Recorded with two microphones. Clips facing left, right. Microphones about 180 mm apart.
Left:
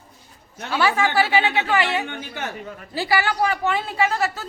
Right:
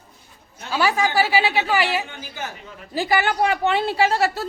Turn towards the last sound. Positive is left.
turn(degrees=-30)  # may be behind; listen again after turning